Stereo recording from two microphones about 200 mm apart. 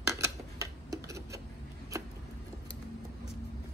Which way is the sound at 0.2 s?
15° right (ahead or behind).